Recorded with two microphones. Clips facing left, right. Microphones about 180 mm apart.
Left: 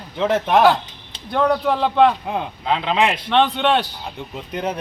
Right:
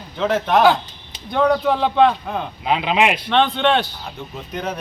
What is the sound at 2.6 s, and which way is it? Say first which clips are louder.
Speech: right 1 dB; 15° right (ahead or behind).